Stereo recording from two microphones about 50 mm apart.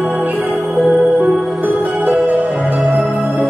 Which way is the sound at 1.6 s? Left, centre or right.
Right.